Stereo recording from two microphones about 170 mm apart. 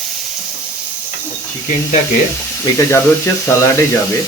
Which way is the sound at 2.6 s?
15° left (ahead or behind).